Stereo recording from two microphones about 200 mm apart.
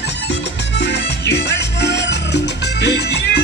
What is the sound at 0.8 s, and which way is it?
Salsa music, 60° left (ahead or behind).